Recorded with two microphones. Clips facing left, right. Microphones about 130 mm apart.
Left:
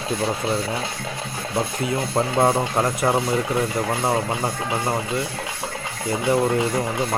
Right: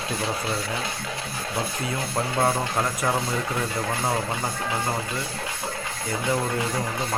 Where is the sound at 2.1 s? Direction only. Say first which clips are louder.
Left 4 dB; 25° left (ahead or behind).